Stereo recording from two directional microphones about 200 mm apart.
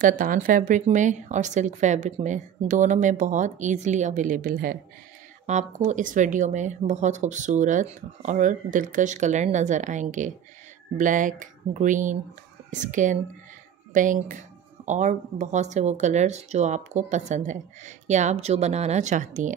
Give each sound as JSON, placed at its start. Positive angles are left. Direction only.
{"t": 0.0, "sound": "speech", "side_deg": -40}